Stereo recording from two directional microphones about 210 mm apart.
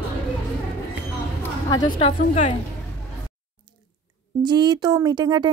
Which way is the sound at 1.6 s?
20° left (ahead or behind).